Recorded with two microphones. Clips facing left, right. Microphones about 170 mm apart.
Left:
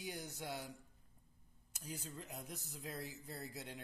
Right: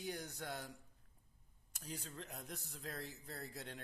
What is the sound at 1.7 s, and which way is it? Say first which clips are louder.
Speech: even; centre (ahead or behind).